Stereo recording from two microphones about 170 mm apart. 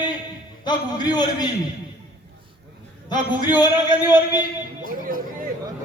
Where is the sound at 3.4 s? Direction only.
25° left (ahead or behind).